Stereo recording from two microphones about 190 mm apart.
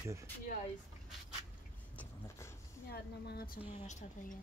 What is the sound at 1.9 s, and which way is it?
Vehicle, 15° left (ahead or behind).